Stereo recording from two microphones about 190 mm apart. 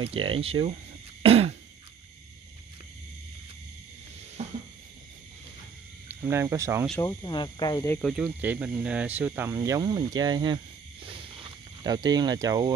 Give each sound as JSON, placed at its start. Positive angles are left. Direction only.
{"t": 0.0, "sound": "speech", "side_deg": -30}
{"t": 1.2, "sound": "throat clearing", "side_deg": -30}
{"t": 4.4, "sound": "a sound", "side_deg": -35}
{"t": 6.0, "sound": "speech", "side_deg": -15}
{"t": 7.0, "sound": "speech", "side_deg": 20}
{"t": 7.9, "sound": "speech", "side_deg": 0}
{"t": 11.8, "sound": "speech", "side_deg": -20}